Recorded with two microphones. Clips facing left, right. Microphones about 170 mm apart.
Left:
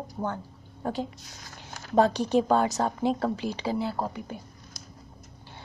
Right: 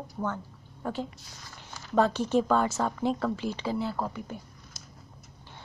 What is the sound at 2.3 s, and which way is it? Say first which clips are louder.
A woman's voice: left 2 dB; 15° left (ahead or behind).